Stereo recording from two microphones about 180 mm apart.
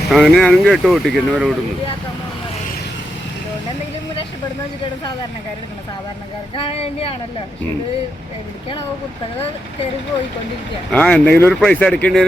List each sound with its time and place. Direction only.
0.1 s speech: centre (ahead or behind)
6.6 s speech: 30° left (ahead or behind)
10.9 s speech: 5° left (ahead or behind)